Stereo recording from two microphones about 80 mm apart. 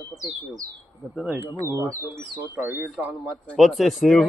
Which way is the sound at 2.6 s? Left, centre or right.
Right.